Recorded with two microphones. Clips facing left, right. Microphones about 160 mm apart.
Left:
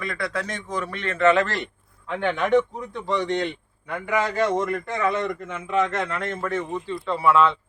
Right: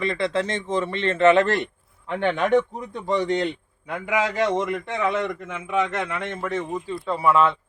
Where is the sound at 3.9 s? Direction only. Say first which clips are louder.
Even; 5° right (ahead or behind).